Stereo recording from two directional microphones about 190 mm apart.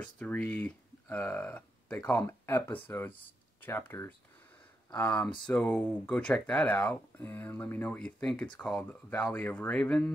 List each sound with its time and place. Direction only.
0.0 s speech: 5° left (ahead or behind)